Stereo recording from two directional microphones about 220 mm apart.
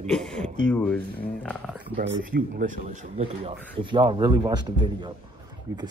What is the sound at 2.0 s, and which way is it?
Speech, 35° right (ahead or behind).